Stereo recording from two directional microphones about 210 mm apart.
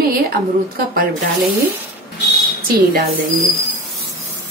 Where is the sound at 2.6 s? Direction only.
45° right (ahead or behind).